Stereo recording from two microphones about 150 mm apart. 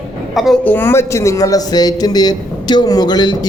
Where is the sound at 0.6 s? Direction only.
15° left (ahead or behind).